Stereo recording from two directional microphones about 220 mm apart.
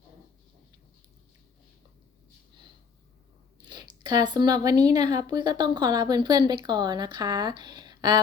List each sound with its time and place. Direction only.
3.7 s speech: 20° right (ahead or behind)